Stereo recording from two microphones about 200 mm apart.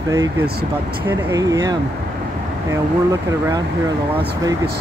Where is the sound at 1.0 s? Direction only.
15° right (ahead or behind).